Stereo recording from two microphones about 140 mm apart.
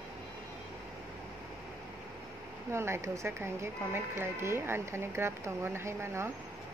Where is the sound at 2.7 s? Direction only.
20° right (ahead or behind).